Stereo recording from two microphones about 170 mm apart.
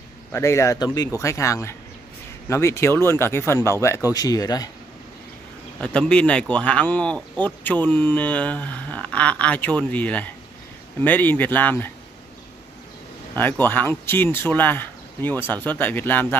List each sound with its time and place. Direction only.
0.3 s speech: 15° left (ahead or behind)
5.8 s speech: 5° left (ahead or behind)
13.3 s speech: 10° left (ahead or behind)